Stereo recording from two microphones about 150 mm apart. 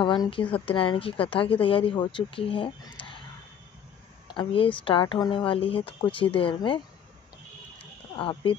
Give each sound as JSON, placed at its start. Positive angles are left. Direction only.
{"t": 0.0, "sound": "speech", "side_deg": 35}
{"t": 4.3, "sound": "speech", "side_deg": 35}
{"t": 7.8, "sound": "a sound", "side_deg": 35}